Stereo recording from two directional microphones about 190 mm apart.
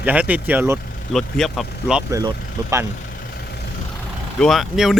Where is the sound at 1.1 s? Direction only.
Centre (ahead or behind).